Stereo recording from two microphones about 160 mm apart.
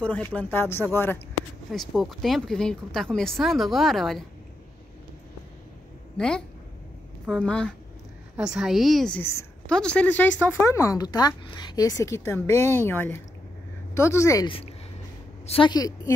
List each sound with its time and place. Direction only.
0.0 s speech: 10° left (ahead or behind)
1.7 s speech: centre (ahead or behind)
6.1 s speech: 5° left (ahead or behind)
9.2 s speech: 15° left (ahead or behind)
9.7 s speech: 5° left (ahead or behind)
15.4 s a woman's voice: 35° left (ahead or behind)